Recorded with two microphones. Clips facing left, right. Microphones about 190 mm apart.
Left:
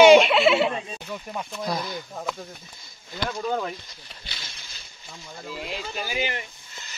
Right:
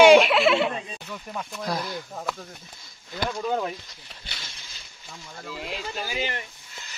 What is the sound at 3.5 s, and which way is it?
Speech, 5° right (ahead or behind).